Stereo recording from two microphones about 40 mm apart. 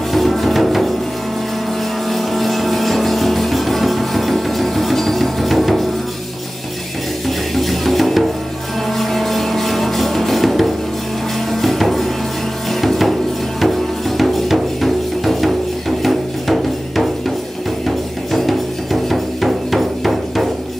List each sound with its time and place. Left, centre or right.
0.1 s music: centre
2.0 s music: centre
7.2 s music: centre